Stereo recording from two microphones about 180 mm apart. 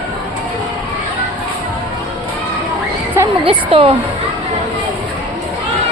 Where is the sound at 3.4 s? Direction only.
30° right (ahead or behind).